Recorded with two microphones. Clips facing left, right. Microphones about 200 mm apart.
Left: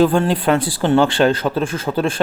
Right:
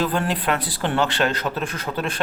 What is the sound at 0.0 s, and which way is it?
Speech, 30° left (ahead or behind).